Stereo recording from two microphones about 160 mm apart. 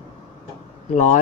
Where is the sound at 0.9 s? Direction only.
50° left (ahead or behind).